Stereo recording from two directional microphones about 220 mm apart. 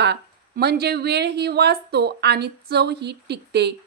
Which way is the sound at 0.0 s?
50° right (ahead or behind).